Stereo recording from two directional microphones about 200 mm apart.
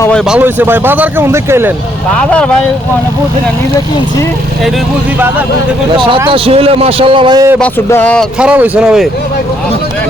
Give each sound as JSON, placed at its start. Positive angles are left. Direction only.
{"t": 0.3, "sound": "speech", "side_deg": -10}
{"t": 2.1, "sound": "speech", "side_deg": 5}
{"t": 6.2, "sound": "a man's voice", "side_deg": -30}
{"t": 7.6, "sound": "speech", "side_deg": 10}